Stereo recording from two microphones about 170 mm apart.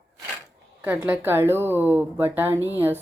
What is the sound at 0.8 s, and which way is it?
Speech, 10° right (ahead or behind).